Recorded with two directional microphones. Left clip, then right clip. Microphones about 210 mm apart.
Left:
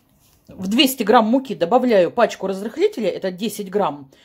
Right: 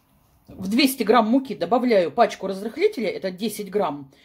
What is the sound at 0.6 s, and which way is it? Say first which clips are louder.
Speech: left 4 dB; 25° left (ahead or behind).